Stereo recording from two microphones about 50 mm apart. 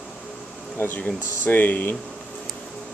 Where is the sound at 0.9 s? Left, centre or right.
Left.